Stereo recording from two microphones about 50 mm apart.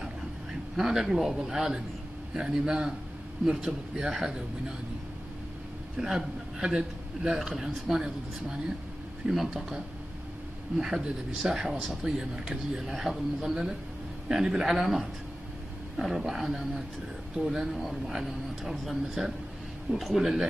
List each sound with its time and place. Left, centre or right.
0.7 s a man's voice: centre
3.9 s speech: centre
5.9 s a man's voice: centre
9.3 s speech: centre
10.8 s speech: centre